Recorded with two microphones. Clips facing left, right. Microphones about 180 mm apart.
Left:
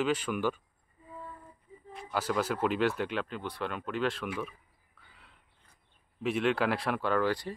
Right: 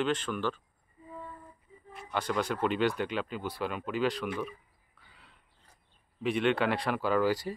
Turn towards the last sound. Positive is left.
turn(degrees=-5)  # may be behind; listen again after turning